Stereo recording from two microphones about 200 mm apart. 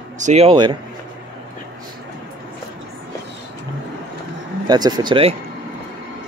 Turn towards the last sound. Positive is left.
turn(degrees=-25)  # may be behind; listen again after turning